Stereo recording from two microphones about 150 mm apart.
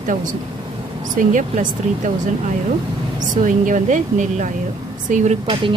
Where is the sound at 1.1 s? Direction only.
60° right (ahead or behind).